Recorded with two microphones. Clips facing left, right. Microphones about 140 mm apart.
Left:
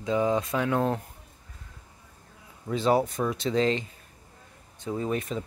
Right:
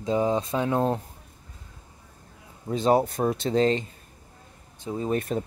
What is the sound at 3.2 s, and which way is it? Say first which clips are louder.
Speech: right 3 dB; 45° right (ahead or behind).